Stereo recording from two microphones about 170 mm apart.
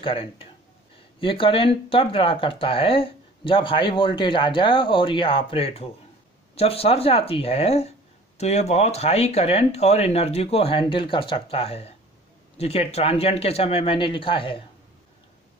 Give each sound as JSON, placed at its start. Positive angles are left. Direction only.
{"t": 0.0, "sound": "speech", "side_deg": 35}